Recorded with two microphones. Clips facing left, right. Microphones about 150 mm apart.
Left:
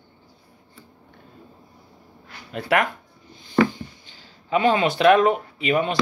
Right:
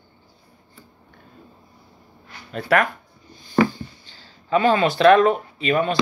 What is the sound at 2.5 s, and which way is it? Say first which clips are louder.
Speech: right 2 dB; 20° left (ahead or behind).